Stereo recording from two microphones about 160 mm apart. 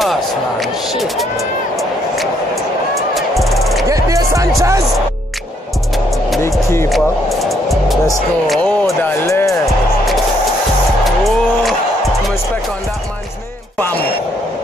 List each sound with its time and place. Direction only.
0.0 s speech: centre (ahead or behind)
1.8 s vehicle: centre (ahead or behind)
3.2 s music: centre (ahead or behind)
3.9 s music: 20° right (ahead or behind)
4.6 s speech: 20° right (ahead or behind)
6.9 s music: centre (ahead or behind)
8.5 s speech: centre (ahead or behind)
9.0 s speech: 15° left (ahead or behind)
11.1 s music: centre (ahead or behind)